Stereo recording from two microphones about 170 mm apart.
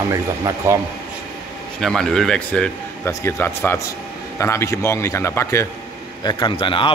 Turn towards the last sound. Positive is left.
turn(degrees=30)  # may be behind; listen again after turning